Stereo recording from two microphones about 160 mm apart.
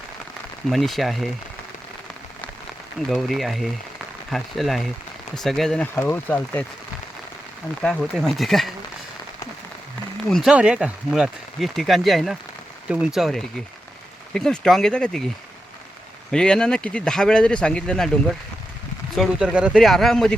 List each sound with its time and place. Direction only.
0.7 s speech: centre (ahead or behind)
3.1 s speech: centre (ahead or behind)
7.8 s speech: 5° left (ahead or behind)
10.2 s speech: centre (ahead or behind)
16.3 s speech: 5° left (ahead or behind)
19.1 s speech: centre (ahead or behind)